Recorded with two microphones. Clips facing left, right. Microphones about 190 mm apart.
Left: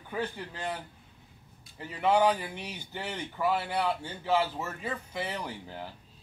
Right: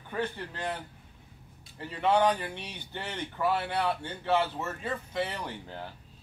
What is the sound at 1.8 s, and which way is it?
A man's voice, 10° left (ahead or behind).